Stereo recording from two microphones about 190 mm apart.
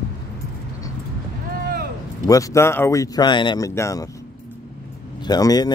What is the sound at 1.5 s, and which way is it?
Vehicle, 50° right (ahead or behind).